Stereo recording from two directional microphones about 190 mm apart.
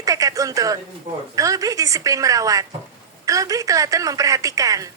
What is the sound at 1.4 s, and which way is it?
A woman's voice, 20° right (ahead or behind).